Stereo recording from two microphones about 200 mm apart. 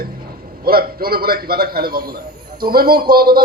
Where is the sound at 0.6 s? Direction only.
50° right (ahead or behind).